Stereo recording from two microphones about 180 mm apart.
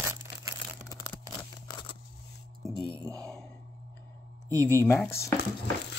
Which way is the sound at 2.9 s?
20° right (ahead or behind).